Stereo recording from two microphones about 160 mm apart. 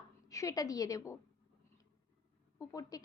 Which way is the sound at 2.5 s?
20° left (ahead or behind).